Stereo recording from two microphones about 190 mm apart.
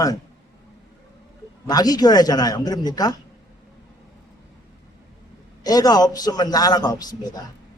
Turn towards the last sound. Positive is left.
turn(degrees=20)  # may be behind; listen again after turning